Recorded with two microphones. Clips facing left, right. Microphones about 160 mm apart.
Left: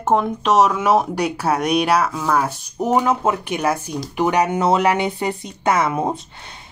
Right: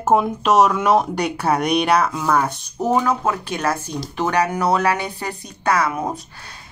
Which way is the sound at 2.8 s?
20° left (ahead or behind).